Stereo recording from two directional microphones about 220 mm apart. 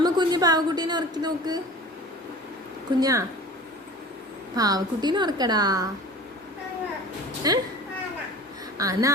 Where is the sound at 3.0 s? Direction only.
15° right (ahead or behind).